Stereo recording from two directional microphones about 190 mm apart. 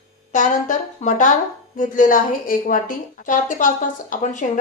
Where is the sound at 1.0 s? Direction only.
40° left (ahead or behind).